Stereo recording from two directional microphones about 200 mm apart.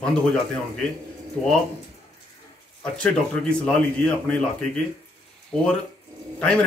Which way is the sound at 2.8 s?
5° left (ahead or behind).